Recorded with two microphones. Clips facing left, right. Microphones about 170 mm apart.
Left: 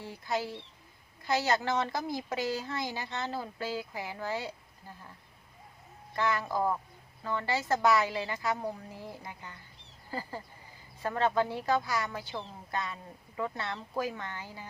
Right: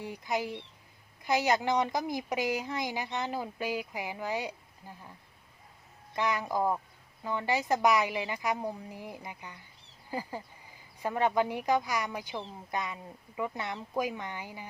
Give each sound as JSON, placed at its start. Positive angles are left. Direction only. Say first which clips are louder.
{"t": 0.0, "sound": "a woman's voice", "louder": "right 1 dB", "side_deg": -15}
{"t": 6.1, "sound": "a woman's voice", "louder": "even", "side_deg": -15}